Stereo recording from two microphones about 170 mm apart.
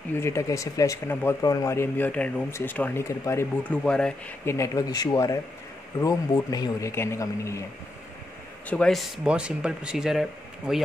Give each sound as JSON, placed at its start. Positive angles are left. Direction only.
{"t": 0.1, "sound": "speech", "side_deg": 15}
{"t": 4.6, "sound": "a man's voice", "side_deg": 20}
{"t": 8.6, "sound": "speech", "side_deg": 5}